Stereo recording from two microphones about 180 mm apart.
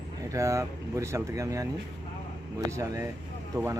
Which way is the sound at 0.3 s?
15° right (ahead or behind).